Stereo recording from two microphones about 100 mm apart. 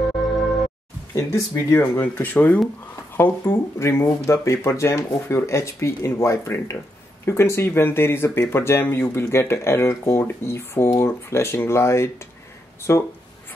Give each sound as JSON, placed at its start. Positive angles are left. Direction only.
{"t": 0.0, "sound": "music", "side_deg": 0}
{"t": 1.1, "sound": "speech", "side_deg": 30}